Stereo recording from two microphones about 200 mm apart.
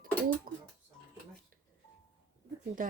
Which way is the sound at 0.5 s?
45° right (ahead or behind).